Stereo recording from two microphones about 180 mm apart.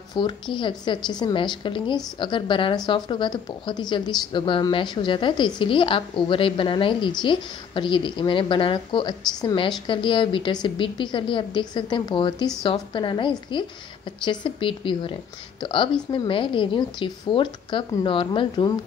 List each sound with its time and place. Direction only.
0.1 s a woman's voice: 25° left (ahead or behind)